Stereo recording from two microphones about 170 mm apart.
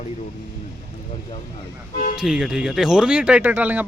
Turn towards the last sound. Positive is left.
turn(degrees=-10)  # may be behind; listen again after turning